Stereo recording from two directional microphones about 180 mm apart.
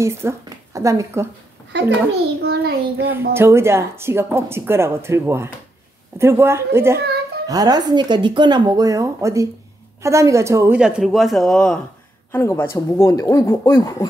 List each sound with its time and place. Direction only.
0.0 s speech: 15° right (ahead or behind)
1.7 s a child's voice: 75° right (ahead or behind)
2.4 s child singing: 60° right (ahead or behind)
3.3 s speech: 15° right (ahead or behind)
10.8 s speech: 5° right (ahead or behind); by 14.0 s 15° left (ahead or behind)